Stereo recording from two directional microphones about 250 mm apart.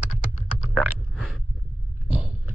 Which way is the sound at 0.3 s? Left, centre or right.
Left.